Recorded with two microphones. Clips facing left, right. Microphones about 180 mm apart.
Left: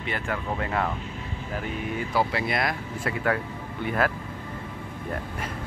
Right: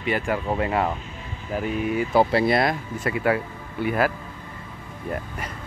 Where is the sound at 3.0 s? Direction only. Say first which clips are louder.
Right 4 dB; 5° right (ahead or behind).